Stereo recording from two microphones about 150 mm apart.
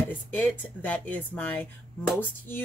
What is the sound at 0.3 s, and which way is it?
Speech, 10° left (ahead or behind).